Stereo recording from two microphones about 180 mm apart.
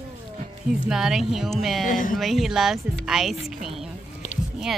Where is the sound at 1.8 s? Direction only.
50° left (ahead or behind).